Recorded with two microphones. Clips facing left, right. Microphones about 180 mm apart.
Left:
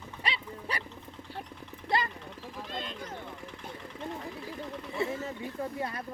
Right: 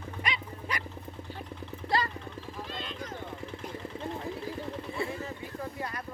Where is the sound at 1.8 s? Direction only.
20° left (ahead or behind).